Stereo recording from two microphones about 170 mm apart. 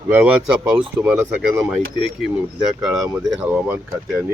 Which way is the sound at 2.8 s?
5° right (ahead or behind).